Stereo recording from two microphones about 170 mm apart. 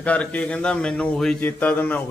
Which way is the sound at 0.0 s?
10° left (ahead or behind).